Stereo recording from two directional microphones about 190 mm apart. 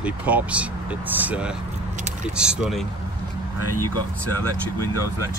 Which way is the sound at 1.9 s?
40° right (ahead or behind).